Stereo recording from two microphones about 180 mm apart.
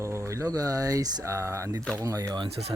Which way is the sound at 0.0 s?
15° right (ahead or behind).